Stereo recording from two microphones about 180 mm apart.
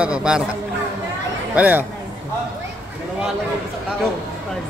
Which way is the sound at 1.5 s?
10° right (ahead or behind).